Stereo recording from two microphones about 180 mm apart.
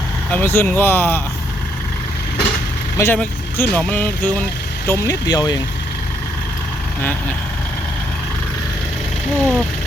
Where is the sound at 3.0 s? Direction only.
10° left (ahead or behind).